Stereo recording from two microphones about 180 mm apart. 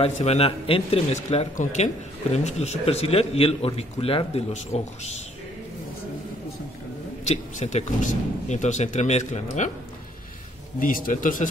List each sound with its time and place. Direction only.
0.0 s speech: 35° left (ahead or behind)
7.2 s speech: 40° left (ahead or behind)
10.8 s a man's voice: 50° left (ahead or behind)